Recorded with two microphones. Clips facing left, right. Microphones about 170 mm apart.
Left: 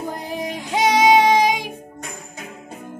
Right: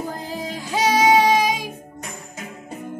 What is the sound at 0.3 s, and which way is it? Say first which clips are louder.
Child singing: left 4 dB; 15° left (ahead or behind).